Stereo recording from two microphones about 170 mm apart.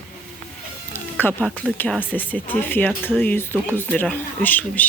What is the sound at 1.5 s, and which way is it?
Speech, 5° left (ahead or behind).